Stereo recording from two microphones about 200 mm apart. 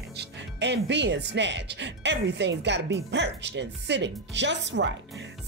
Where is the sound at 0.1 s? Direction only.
60° right (ahead or behind).